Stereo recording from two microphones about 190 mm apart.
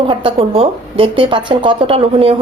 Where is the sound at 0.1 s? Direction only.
25° right (ahead or behind).